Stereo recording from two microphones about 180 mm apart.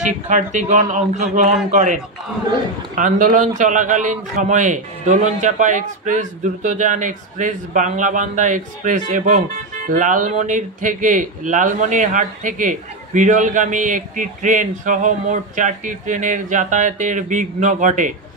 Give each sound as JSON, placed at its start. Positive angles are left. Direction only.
{"t": 0.0, "sound": "speech", "side_deg": -45}
{"t": 3.0, "sound": "speech", "side_deg": -45}